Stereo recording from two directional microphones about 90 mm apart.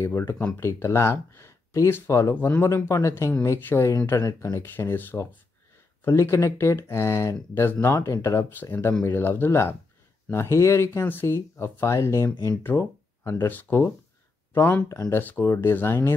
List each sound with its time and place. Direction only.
0.0 s speech: 30° left (ahead or behind)
12.4 s speech: 20° left (ahead or behind)
14.9 s speech: 35° left (ahead or behind)
15.1 s speech: 20° left (ahead or behind)